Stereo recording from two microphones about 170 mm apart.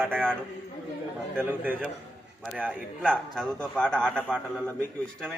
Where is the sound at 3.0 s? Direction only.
10° right (ahead or behind).